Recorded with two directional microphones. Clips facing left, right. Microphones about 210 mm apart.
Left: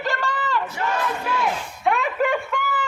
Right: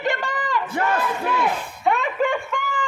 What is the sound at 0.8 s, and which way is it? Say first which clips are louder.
Battle cry: right 3 dB; 50° right (ahead or behind).